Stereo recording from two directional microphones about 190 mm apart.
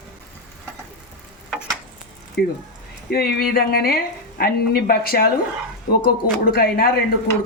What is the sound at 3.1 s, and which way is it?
Speech, 55° left (ahead or behind).